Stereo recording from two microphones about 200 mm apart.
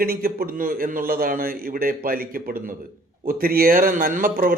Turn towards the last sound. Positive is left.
turn(degrees=-45)  # may be behind; listen again after turning